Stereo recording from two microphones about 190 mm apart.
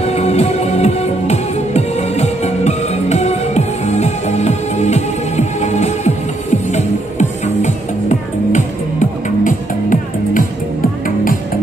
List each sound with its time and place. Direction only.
0.0 s music: 35° left (ahead or behind)